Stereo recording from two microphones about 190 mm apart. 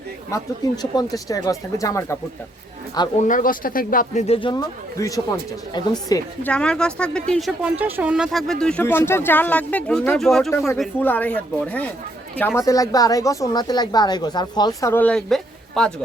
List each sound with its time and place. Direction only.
0.3 s speech: 20° left (ahead or behind)
3.2 s speech: 45° left (ahead or behind); by 6.5 s 20° left (ahead or behind)
6.5 s speech: 5° left (ahead or behind)